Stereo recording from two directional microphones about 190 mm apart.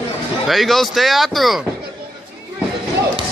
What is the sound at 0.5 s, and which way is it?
Speech, centre (ahead or behind).